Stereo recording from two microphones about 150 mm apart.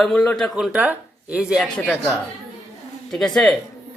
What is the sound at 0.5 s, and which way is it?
Speech, 10° right (ahead or behind).